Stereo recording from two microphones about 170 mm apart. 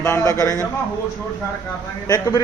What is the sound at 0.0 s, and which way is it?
Speech, 15° left (ahead or behind).